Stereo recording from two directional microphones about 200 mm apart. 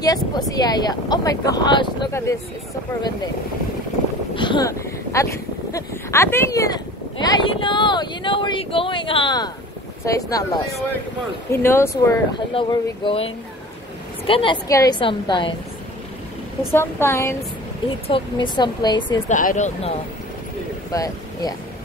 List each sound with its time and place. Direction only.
0.0 s speech: 20° left (ahead or behind)
4.4 s speech: 20° left (ahead or behind)
12.5 s speech: 25° left (ahead or behind)
16.7 s speech: 10° left (ahead or behind)
18.0 s speech: 25° left (ahead or behind)
19.2 s speech: 40° left (ahead or behind)
20.9 s speech: 20° left (ahead or behind)